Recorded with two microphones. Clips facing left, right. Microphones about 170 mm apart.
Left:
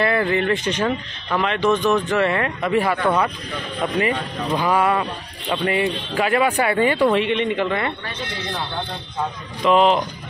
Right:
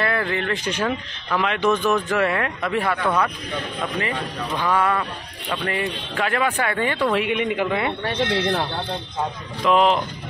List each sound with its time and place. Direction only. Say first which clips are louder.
0.0 s speech: left 4 dB; 5° left (ahead or behind)
7.2 s speech: left 2 dB; 10° right (ahead or behind)
8.0 s speech: right 8 dB; 70° right (ahead or behind)
9.7 s speech: left 2 dB; centre (ahead or behind)